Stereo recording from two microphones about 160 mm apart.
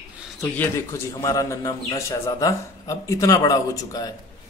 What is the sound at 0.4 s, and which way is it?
A man's voice, 15° left (ahead or behind).